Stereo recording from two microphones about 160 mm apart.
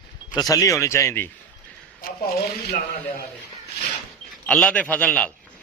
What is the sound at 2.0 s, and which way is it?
Speech, 65° left (ahead or behind).